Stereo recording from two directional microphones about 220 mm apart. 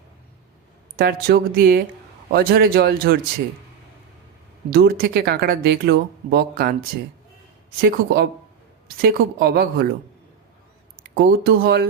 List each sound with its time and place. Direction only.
0.9 s speech: 40° right (ahead or behind)
4.7 s speech: 45° right (ahead or behind)
7.8 s speech: 45° right (ahead or behind)
10.9 s speech: 45° right (ahead or behind)